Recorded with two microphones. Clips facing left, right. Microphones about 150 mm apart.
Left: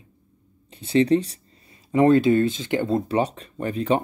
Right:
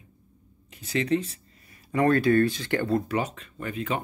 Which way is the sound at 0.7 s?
30° left (ahead or behind).